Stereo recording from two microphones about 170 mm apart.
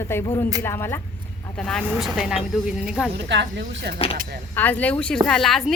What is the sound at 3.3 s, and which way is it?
Speech, 90° right.